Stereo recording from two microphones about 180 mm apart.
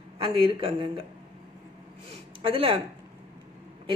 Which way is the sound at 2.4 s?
30° right (ahead or behind).